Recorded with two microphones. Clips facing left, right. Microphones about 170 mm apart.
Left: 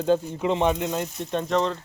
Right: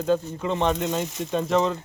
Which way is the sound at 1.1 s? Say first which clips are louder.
Right 2 dB; 90° right.